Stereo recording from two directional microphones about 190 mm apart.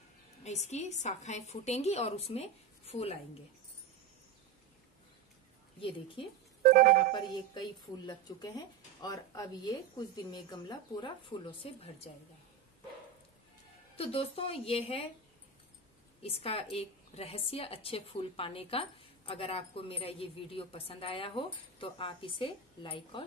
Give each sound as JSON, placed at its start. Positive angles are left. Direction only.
{"t": 0.4, "sound": "a woman's voice", "side_deg": 35}
{"t": 5.8, "sound": "a woman's voice", "side_deg": 25}
{"t": 6.6, "sound": "speech", "side_deg": -45}
{"t": 7.5, "sound": "a woman's voice", "side_deg": 20}
{"t": 13.9, "sound": "a woman's voice", "side_deg": 30}
{"t": 16.2, "sound": "a woman's voice", "side_deg": 30}